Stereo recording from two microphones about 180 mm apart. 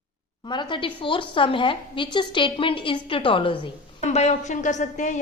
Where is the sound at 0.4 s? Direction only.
25° left (ahead or behind).